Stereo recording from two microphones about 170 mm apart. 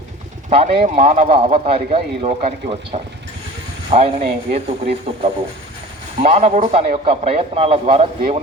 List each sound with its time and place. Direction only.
0.5 s a man's voice: 35° right (ahead or behind)
1.0 s speech: 55° right (ahead or behind)
1.3 s a man's voice: 35° right (ahead or behind)